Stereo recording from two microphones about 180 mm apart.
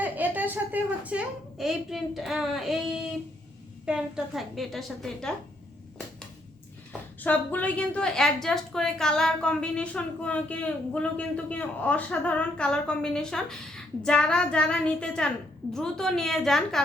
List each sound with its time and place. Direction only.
0.0 s a woman's voice: 10° right (ahead or behind)
7.2 s a woman's voice: 10° left (ahead or behind)